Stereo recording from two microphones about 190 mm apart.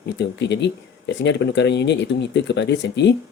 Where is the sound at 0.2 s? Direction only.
65° left (ahead or behind).